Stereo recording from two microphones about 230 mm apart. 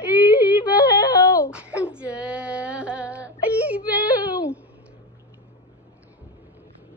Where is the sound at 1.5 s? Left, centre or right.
Centre.